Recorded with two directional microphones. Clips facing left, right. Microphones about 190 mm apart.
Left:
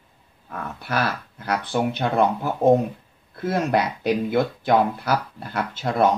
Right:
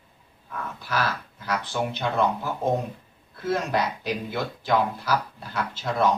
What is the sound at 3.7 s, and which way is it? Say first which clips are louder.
Speech: left 5 dB; 55° left (ahead or behind).